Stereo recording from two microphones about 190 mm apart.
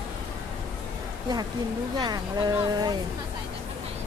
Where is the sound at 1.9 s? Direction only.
20° right (ahead or behind).